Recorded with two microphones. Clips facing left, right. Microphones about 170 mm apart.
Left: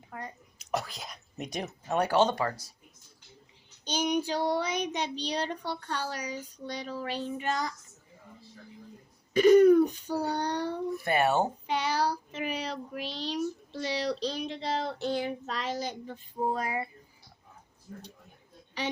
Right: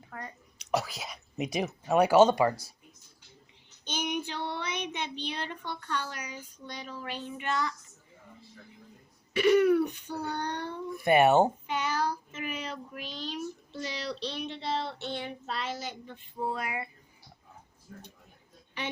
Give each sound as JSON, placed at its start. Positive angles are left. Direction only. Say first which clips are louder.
{"t": 0.1, "sound": "speech", "louder": "left 1 dB", "side_deg": 15}
{"t": 0.6, "sound": "speech", "louder": "right 3 dB", "side_deg": 0}
{"t": 3.8, "sound": "child singing", "louder": "left 5 dB", "side_deg": 35}
{"t": 9.3, "sound": "a child's voice", "louder": "left 4 dB", "side_deg": 40}
{"t": 11.0, "sound": "speech", "louder": "right 5 dB", "side_deg": -20}
{"t": 11.6, "sound": "child singing", "louder": "left 2 dB", "side_deg": 35}